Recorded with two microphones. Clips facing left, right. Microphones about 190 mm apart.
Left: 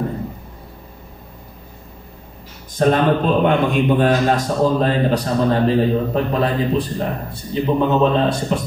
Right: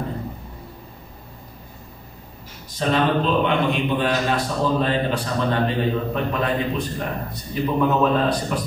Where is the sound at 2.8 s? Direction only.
50° left (ahead or behind).